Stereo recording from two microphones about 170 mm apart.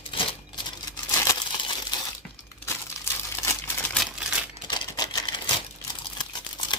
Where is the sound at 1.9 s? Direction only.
25° left (ahead or behind).